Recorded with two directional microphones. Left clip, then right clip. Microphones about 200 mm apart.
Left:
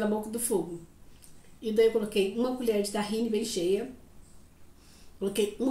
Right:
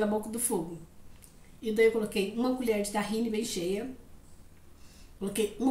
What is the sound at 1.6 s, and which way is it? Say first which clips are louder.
Speech: left 1 dB; 20° right (ahead or behind).